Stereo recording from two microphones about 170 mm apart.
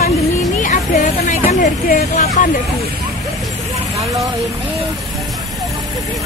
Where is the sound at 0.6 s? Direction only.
45° left (ahead or behind).